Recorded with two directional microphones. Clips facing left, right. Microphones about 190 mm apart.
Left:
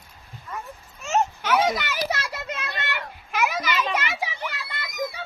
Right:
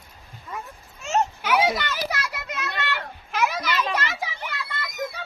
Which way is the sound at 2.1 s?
25° left (ahead or behind).